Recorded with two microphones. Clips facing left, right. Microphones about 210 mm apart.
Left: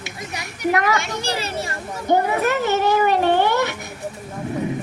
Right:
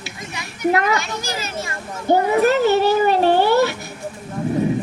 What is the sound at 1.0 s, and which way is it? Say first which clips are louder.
Children playing: left 1 dB; 30° left (ahead or behind).